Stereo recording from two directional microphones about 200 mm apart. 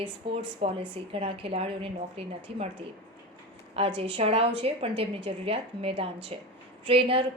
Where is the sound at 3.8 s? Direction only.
30° right (ahead or behind).